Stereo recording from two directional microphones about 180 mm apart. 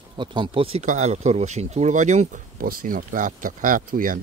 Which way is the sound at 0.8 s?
40° right (ahead or behind).